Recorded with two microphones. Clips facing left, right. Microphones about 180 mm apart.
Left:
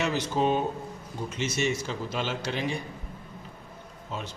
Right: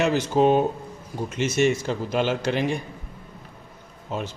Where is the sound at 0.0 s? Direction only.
55° right (ahead or behind).